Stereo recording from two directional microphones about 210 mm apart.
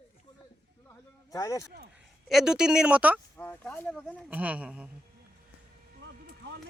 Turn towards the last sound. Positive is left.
turn(degrees=-55)  # may be behind; listen again after turning